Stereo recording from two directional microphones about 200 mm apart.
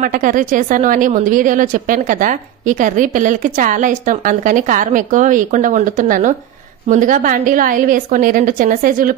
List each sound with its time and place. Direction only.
0.0 s a woman's voice: 40° right (ahead or behind)